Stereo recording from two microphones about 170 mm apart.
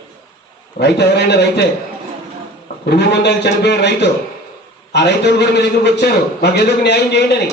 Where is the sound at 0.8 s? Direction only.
80° left.